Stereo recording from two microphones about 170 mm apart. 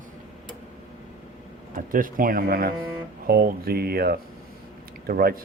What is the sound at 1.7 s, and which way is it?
Speech, 55° right (ahead or behind).